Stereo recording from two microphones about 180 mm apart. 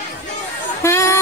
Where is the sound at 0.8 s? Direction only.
15° left (ahead or behind).